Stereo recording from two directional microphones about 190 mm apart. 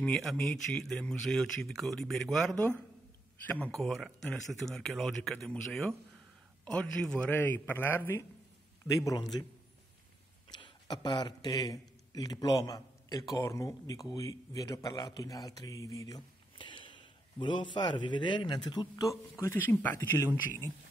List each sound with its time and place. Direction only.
0.0 s a man's voice: centre (ahead or behind); by 9.2 s 15° left (ahead or behind)
10.5 s a man's voice: 20° left (ahead or behind)